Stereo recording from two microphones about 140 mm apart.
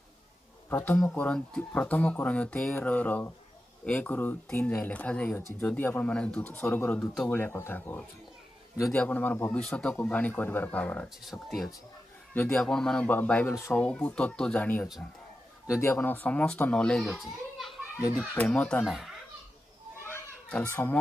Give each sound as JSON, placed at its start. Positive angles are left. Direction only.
{"t": 0.7, "sound": "speech", "side_deg": 15}
{"t": 12.4, "sound": "speech", "side_deg": 5}
{"t": 18.3, "sound": "speech", "side_deg": 10}
{"t": 20.6, "sound": "speech", "side_deg": 20}